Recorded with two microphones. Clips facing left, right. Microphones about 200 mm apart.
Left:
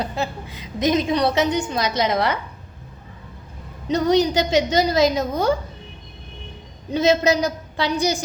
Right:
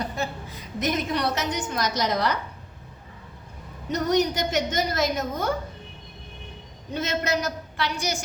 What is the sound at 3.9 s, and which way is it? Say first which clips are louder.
A woman's voice: left 5 dB; 75° left (ahead or behind).